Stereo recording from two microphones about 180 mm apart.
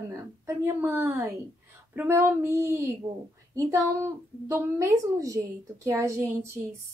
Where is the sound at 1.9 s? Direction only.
10° right (ahead or behind).